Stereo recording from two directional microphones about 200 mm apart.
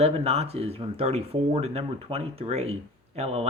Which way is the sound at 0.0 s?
30° right (ahead or behind).